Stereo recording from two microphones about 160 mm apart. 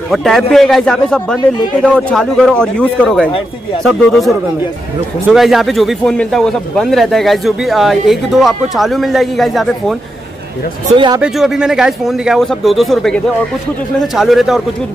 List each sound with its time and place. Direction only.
0.1 s speech: centre (ahead or behind)
11.1 s speech: 5° right (ahead or behind)
14.1 s speech: centre (ahead or behind)